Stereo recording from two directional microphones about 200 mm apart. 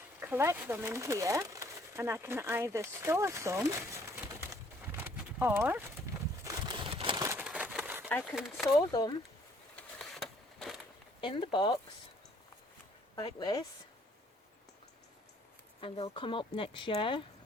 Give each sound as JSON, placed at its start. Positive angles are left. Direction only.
{"t": 0.2, "sound": "speech", "side_deg": -10}
{"t": 6.4, "sound": "a sound", "side_deg": -20}
{"t": 7.3, "sound": "a sound", "side_deg": -5}
{"t": 8.2, "sound": "speech", "side_deg": 0}
{"t": 8.6, "sound": "speech", "side_deg": 20}
{"t": 9.7, "sound": "a sound", "side_deg": 0}
{"t": 11.2, "sound": "speech", "side_deg": 25}
{"t": 13.1, "sound": "speech", "side_deg": 20}
{"t": 15.8, "sound": "speech", "side_deg": 25}